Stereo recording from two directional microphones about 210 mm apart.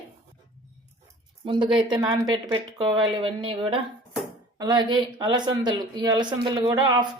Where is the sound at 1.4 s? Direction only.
20° right (ahead or behind).